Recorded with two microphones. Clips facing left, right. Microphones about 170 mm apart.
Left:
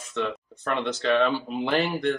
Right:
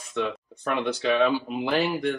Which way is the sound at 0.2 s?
10° right (ahead or behind).